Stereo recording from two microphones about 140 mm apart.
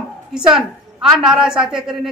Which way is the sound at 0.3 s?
5° right (ahead or behind).